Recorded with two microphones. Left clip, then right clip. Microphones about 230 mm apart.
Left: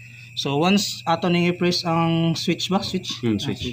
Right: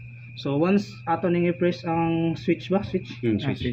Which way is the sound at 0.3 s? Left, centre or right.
Left.